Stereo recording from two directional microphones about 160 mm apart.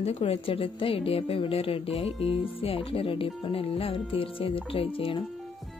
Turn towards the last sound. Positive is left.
turn(degrees=35)  # may be behind; listen again after turning